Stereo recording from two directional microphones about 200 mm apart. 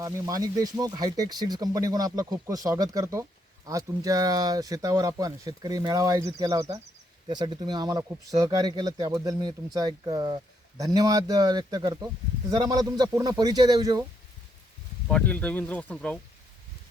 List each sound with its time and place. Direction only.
0.0 s speech: 20° right (ahead or behind)
15.0 s speech: 5° left (ahead or behind)